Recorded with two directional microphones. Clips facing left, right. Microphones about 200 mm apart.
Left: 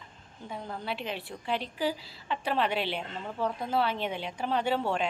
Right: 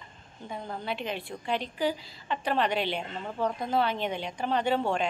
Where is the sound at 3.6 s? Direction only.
5° left (ahead or behind).